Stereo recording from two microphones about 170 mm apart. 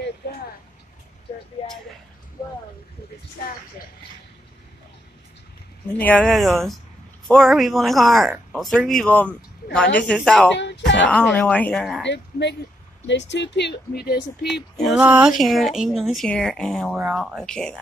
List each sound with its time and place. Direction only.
5.9 s speech: 10° left (ahead or behind)
10.6 s speech: 90° left
11.1 s speech: 5° left (ahead or behind)
12.0 s speech: 90° left; by 14.5 s 70° left (ahead or behind)
14.5 s speech: centre (ahead or behind)